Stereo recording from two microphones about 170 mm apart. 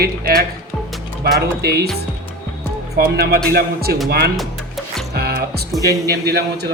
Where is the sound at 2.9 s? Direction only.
70° right (ahead or behind).